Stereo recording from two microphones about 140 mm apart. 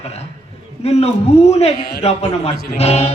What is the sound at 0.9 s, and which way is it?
A man's voice, 50° left (ahead or behind).